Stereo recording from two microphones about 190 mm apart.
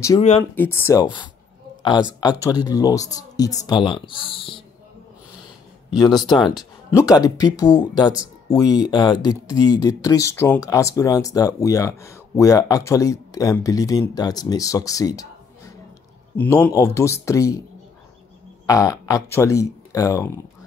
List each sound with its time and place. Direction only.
0.4 s speech: 15° left (ahead or behind)
1.0 s speech: 25° left (ahead or behind)
5.9 s speech: 25° left (ahead or behind)
16.3 s speech: 10° left (ahead or behind)
18.7 s speech: 20° left (ahead or behind)